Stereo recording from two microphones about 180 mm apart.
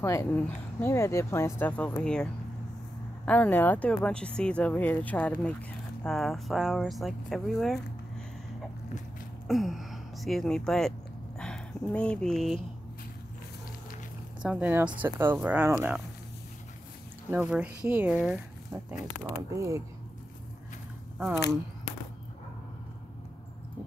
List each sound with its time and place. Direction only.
0.0 s speech: 15° left (ahead or behind)
3.3 s speech: 10° left (ahead or behind)
9.5 s a sound: centre (ahead or behind)
11.3 s speech: 5° left (ahead or behind)
14.4 s speech: 10° right (ahead or behind)
17.3 s speech: 10° right (ahead or behind)
19.2 s speech: 15° right (ahead or behind)